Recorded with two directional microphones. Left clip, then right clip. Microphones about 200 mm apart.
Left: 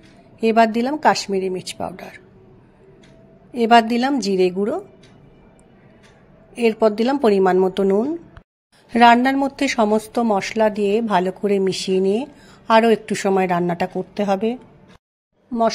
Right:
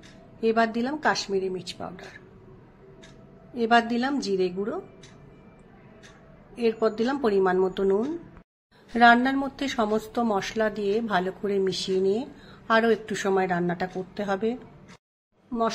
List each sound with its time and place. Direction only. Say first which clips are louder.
0.4 s a woman's voice: left 8 dB; 35° left (ahead or behind)
3.5 s a woman's voice: left 8 dB; 35° left (ahead or behind)
6.5 s a woman's voice: left 8 dB; 40° left (ahead or behind)